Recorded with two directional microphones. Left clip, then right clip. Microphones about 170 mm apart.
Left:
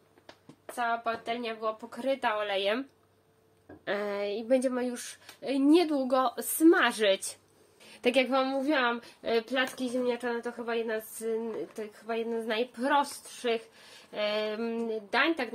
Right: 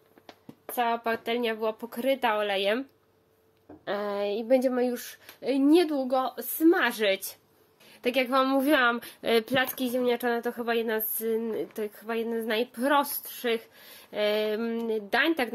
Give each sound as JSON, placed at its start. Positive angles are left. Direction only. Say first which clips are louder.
{"t": 0.7, "sound": "a woman's voice", "louder": "right 3 dB", "side_deg": -60}
{"t": 3.8, "sound": "speech", "louder": "right 2 dB", "side_deg": 0}
{"t": 6.0, "sound": "a woman's voice", "louder": "even", "side_deg": 10}
{"t": 6.7, "sound": "a woman's voice", "louder": "even", "side_deg": 0}
{"t": 7.8, "sound": "a sound", "louder": "left 1 dB", "side_deg": 10}
{"t": 8.5, "sound": "a woman's voice", "louder": "right 5 dB", "side_deg": -55}
{"t": 15.0, "sound": "speech", "louder": "right 2 dB", "side_deg": -55}